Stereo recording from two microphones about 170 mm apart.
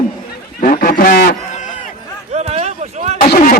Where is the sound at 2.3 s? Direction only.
40° right (ahead or behind).